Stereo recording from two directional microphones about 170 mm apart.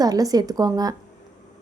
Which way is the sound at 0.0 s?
20° right (ahead or behind).